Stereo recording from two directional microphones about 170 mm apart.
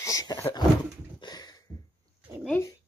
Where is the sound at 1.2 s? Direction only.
25° left (ahead or behind).